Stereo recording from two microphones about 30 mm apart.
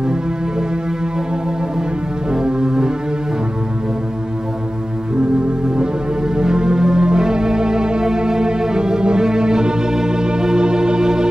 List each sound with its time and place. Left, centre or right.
2.3 s music: right
5.8 s music: right